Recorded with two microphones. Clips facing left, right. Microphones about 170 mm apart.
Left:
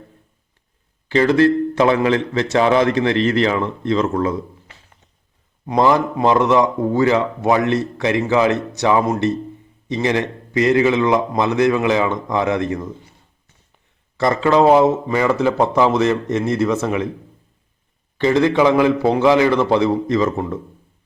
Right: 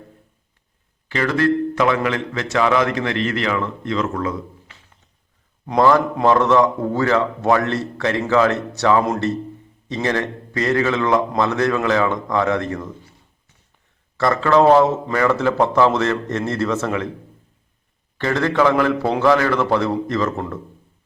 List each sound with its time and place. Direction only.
1.0 s a man's voice: 25° left (ahead or behind)
5.6 s a man's voice: 15° left (ahead or behind)
14.2 s a man's voice: 20° left (ahead or behind)
18.2 s a man's voice: 15° left (ahead or behind)